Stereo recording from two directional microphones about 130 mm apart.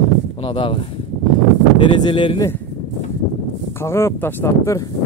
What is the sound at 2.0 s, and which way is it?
Speech, 40° left (ahead or behind).